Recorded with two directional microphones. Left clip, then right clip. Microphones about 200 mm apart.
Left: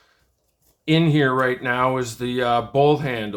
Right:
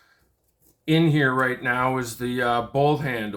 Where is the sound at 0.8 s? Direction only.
25° left (ahead or behind).